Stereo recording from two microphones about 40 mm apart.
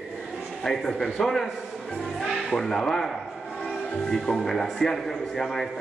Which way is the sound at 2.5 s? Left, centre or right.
Centre.